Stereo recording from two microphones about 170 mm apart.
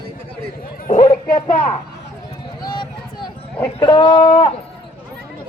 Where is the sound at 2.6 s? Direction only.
25° left (ahead or behind).